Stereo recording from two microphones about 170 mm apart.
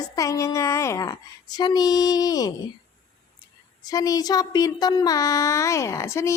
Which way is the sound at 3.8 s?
20° left (ahead or behind).